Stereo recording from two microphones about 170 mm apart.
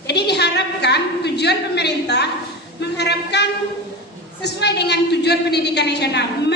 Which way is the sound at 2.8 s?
80° left.